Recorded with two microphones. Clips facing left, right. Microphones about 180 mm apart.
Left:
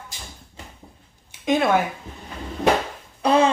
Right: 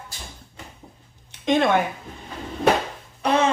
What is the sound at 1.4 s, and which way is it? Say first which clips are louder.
Speech: even; 5° left (ahead or behind).